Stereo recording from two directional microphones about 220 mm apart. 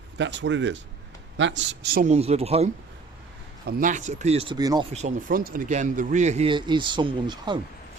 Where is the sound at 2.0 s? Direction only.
30° right (ahead or behind).